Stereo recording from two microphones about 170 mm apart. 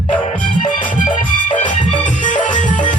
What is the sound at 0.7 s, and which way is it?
Music, 30° left (ahead or behind).